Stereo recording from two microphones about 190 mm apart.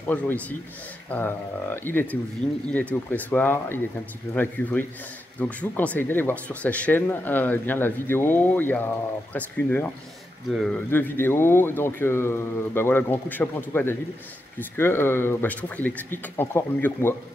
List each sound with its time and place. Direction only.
0.0 s speech: 10° left (ahead or behind)
10.9 s speech: 10° left (ahead or behind)